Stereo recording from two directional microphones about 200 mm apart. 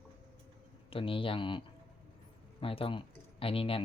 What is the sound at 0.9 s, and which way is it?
Speech, 25° left (ahead or behind).